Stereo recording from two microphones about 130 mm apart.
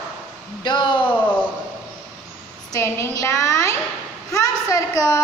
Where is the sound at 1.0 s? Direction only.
15° left (ahead or behind).